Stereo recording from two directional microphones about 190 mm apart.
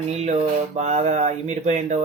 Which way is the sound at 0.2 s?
35° right (ahead or behind).